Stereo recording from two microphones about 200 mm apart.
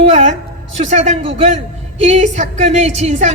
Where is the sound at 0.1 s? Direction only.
35° right (ahead or behind).